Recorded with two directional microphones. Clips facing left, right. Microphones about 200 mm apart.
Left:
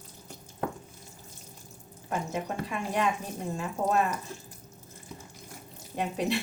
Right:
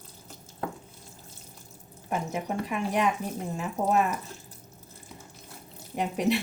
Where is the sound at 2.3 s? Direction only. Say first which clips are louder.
Right 2 dB; 15° right (ahead or behind).